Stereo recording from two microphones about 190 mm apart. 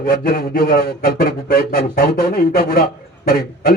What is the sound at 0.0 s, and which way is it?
A man's voice, 50° left (ahead or behind).